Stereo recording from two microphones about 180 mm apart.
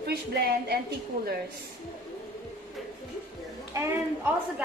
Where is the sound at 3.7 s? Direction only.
10° right (ahead or behind).